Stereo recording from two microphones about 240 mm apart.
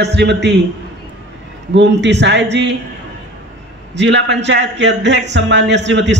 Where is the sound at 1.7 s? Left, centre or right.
Right.